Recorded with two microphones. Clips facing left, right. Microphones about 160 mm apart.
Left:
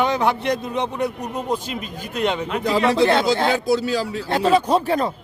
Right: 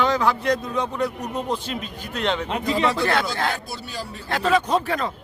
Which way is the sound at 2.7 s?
90° left.